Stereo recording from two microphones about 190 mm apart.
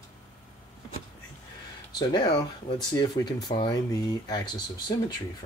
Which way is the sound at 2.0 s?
20° left (ahead or behind).